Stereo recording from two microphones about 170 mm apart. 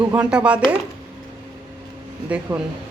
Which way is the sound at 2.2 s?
10° right (ahead or behind).